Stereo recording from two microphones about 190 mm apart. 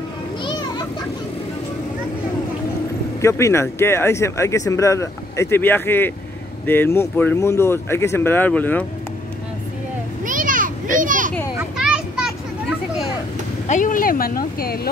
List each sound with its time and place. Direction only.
3.2 s speech: 15° left (ahead or behind)
10.2 s children playing: 45° right (ahead or behind)
11.5 s children playing: 5° right (ahead or behind)
13.7 s speech: 45° left (ahead or behind)